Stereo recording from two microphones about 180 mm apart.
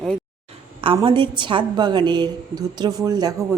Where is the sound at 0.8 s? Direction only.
30° right (ahead or behind).